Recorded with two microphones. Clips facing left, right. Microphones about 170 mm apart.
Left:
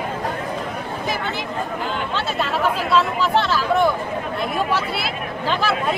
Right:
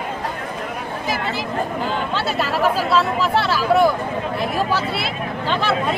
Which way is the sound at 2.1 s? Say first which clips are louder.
Right 1 dB; 5° right (ahead or behind).